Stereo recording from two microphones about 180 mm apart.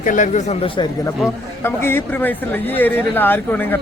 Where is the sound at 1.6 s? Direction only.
10° left (ahead or behind).